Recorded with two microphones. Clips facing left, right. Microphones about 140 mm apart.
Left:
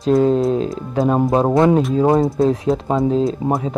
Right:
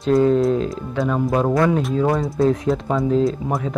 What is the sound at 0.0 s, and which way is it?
Speech, 30° left (ahead or behind).